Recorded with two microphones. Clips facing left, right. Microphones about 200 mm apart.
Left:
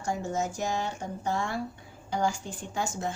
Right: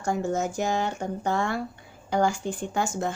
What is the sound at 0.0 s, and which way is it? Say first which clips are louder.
A woman's voice: right 4 dB; 55° right (ahead or behind).